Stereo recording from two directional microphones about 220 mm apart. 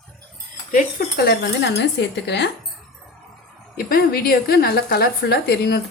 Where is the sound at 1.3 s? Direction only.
50° left (ahead or behind).